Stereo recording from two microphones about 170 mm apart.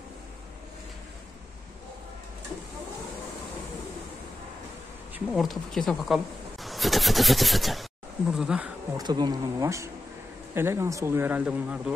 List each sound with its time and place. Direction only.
5.3 s speech: centre (ahead or behind)
8.9 s speech: 25° right (ahead or behind); by 11.9 s 5° right (ahead or behind)